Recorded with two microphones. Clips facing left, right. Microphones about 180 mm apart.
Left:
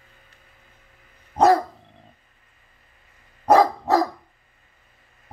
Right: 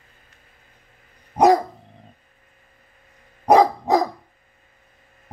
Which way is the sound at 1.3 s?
15° right (ahead or behind).